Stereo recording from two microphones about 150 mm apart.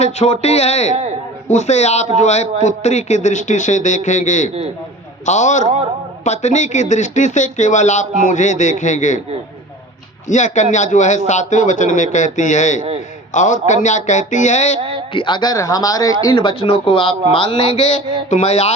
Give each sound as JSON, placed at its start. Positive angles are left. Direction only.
{"t": 0.0, "sound": "a man's voice", "side_deg": 45}
{"t": 5.6, "sound": "a man's voice", "side_deg": -45}
{"t": 6.2, "sound": "a man's voice", "side_deg": 50}
{"t": 10.2, "sound": "a man's voice", "side_deg": 55}
{"t": 14.8, "sound": "speech", "side_deg": -35}
{"t": 15.1, "sound": "a man's voice", "side_deg": 30}